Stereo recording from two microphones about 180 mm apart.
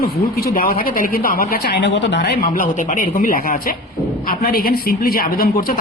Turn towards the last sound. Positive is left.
turn(degrees=55)  # may be behind; listen again after turning